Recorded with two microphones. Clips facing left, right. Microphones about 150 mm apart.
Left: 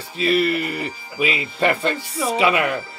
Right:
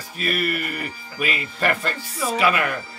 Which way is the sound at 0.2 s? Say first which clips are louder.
Left 6 dB; 25° left (ahead or behind).